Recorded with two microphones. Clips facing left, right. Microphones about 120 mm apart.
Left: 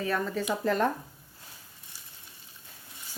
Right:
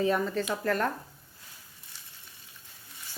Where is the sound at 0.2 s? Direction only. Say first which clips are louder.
Right 1 dB; centre (ahead or behind).